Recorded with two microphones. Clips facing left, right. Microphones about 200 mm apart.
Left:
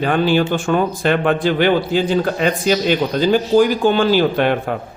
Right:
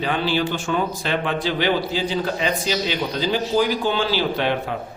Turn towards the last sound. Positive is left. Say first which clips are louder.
# left 6 dB
turn(degrees=50)  # may be behind; listen again after turning